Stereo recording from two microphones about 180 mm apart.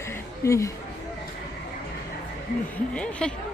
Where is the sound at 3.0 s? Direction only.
5° left (ahead or behind).